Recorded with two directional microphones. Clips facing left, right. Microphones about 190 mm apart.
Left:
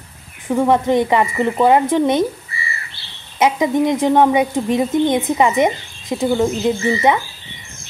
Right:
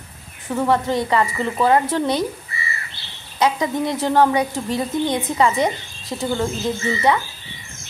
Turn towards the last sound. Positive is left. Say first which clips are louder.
# left 4 dB
turn(degrees=25)  # may be behind; listen again after turning